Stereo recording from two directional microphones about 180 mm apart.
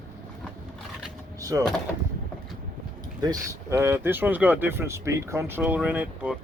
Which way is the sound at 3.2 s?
20° right (ahead or behind).